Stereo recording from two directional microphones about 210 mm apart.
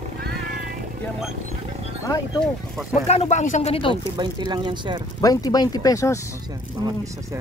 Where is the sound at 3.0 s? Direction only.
30° left (ahead or behind).